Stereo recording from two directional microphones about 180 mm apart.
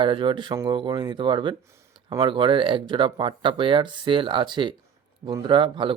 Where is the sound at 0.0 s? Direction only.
25° right (ahead or behind).